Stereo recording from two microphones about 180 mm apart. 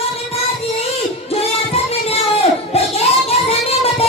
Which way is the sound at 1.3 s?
35° left (ahead or behind).